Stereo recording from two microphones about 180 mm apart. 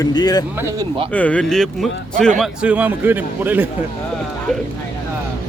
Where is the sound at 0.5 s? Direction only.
20° right (ahead or behind).